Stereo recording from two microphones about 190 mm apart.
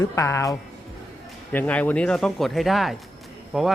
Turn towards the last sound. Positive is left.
turn(degrees=0)  # may be behind; listen again after turning